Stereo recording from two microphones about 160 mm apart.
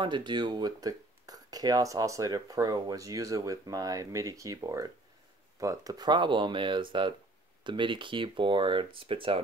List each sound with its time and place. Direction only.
0.0 s speech: 30° right (ahead or behind)